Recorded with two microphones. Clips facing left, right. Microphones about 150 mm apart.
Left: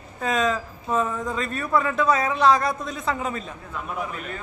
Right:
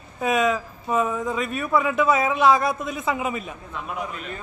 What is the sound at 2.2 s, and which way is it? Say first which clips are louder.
Speech: right 2 dB; 20° right (ahead or behind).